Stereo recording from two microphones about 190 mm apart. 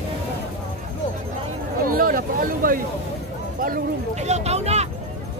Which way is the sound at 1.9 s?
50° right (ahead or behind).